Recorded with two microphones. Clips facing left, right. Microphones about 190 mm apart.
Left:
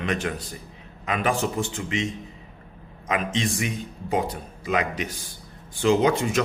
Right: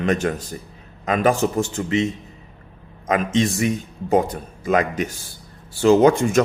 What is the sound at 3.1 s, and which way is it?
Speech, 40° right (ahead or behind).